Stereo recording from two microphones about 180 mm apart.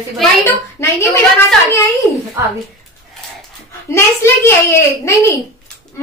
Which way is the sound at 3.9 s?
15° left (ahead or behind).